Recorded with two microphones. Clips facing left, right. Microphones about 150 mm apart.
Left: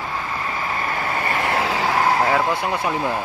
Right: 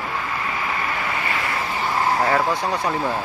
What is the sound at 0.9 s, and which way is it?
Vehicle, 40° left (ahead or behind).